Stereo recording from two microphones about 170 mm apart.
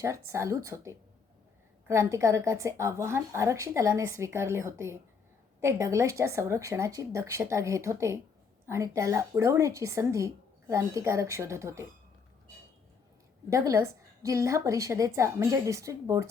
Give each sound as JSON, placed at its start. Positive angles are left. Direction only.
{"t": 0.0, "sound": "a woman's voice", "side_deg": -15}
{"t": 13.5, "sound": "a woman's voice", "side_deg": -20}